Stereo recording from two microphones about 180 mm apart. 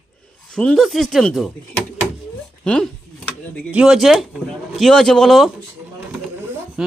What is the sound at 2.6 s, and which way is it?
Speech, 5° left (ahead or behind).